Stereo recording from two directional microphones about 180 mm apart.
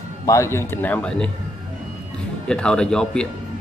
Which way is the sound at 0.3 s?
15° left (ahead or behind).